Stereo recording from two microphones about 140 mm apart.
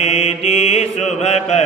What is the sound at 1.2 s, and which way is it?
Chant, 50° left (ahead or behind).